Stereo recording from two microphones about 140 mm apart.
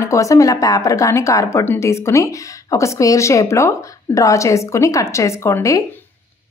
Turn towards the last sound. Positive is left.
turn(degrees=20)  # may be behind; listen again after turning